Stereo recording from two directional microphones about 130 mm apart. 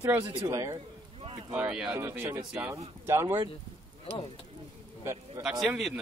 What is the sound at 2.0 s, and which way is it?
Speech, 20° right (ahead or behind).